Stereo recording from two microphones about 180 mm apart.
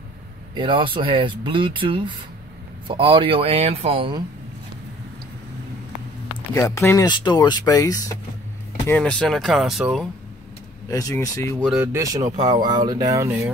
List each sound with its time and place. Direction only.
0.6 s speech: 30° right (ahead or behind)
6.5 s speech: 20° left (ahead or behind)
8.8 s speech: 10° left (ahead or behind)
10.9 s speech: 20° left (ahead or behind)
11.6 s speech: 5° right (ahead or behind)
11.9 s speech: 20° right (ahead or behind)